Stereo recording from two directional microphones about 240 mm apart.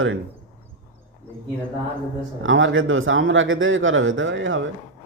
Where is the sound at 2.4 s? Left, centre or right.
Right.